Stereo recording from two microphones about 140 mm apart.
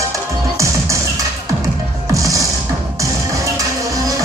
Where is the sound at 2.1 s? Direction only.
25° right (ahead or behind).